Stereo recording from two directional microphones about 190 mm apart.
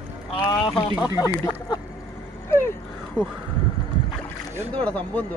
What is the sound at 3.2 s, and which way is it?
Speech, 15° left (ahead or behind).